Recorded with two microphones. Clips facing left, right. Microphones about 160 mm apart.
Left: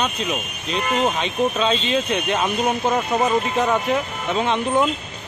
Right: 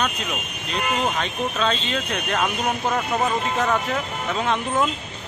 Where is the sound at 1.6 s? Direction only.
10° left (ahead or behind).